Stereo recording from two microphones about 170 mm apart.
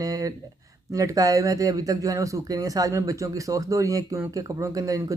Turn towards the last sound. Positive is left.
turn(degrees=-20)  # may be behind; listen again after turning